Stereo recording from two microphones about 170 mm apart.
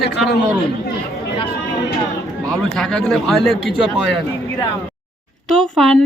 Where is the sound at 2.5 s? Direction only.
5° left (ahead or behind).